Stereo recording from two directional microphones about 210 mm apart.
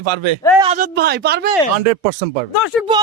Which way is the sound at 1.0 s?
50° right (ahead or behind).